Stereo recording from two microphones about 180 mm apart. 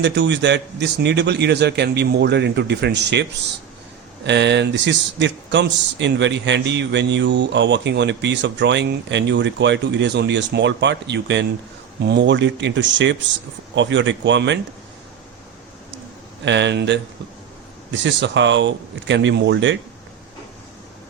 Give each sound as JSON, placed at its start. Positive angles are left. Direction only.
{"t": 0.0, "sound": "a man's voice", "side_deg": -75}
{"t": 16.5, "sound": "a man's voice", "side_deg": -80}
{"t": 17.9, "sound": "speech", "side_deg": -90}